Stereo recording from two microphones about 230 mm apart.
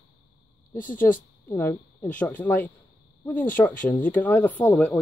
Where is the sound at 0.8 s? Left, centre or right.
Left.